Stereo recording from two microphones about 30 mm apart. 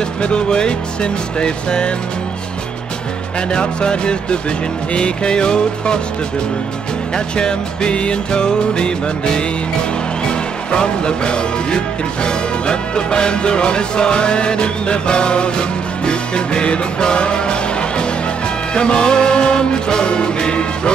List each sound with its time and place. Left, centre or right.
0.2 s speech: left
3.3 s music: left
7.2 s music: left